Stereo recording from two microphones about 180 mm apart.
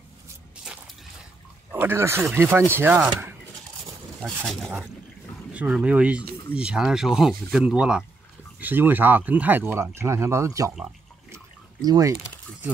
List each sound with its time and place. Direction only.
1.7 s speech: 10° right (ahead or behind)
4.2 s speech: centre (ahead or behind); by 10.7 s 15° right (ahead or behind)
11.2 s a sound: 20° right (ahead or behind)